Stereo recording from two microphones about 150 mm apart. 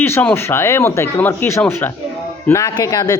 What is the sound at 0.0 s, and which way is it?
A man's voice, 15° left (ahead or behind).